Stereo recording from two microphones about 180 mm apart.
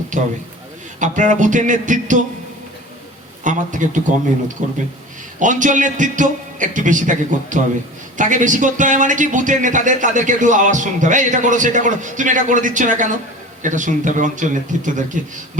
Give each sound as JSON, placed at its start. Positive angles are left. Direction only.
{"t": 0.1, "sound": "a man's voice", "side_deg": -45}
{"t": 3.4, "sound": "speech", "side_deg": -45}